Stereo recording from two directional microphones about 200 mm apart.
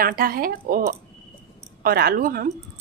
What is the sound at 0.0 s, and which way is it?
Speech, 45° right (ahead or behind).